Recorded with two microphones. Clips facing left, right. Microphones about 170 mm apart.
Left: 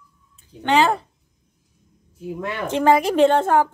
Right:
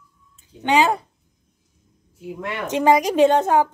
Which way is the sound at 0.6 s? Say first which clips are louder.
Even; 15° right (ahead or behind).